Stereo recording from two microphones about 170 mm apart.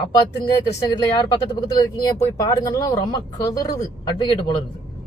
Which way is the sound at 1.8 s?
20° left (ahead or behind).